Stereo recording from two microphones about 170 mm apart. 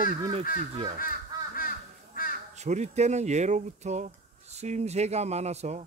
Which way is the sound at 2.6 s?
40° right (ahead or behind).